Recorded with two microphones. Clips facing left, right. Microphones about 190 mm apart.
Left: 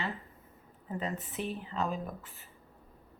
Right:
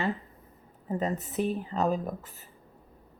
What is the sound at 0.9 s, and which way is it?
Speech, 40° right (ahead or behind).